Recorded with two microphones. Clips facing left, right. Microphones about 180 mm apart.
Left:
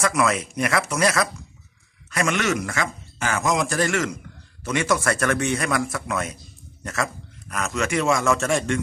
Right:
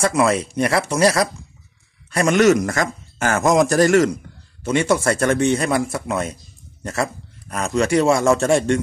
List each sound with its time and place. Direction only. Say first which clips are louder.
0.0 s a man's voice: right 4 dB; 30° right (ahead or behind)
4.6 s a man's voice: right 4 dB; 30° right (ahead or behind)